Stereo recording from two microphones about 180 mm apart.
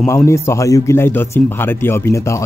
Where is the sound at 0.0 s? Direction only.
15° left (ahead or behind).